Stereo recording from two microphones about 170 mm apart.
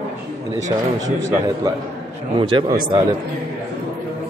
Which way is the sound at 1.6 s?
20° right (ahead or behind).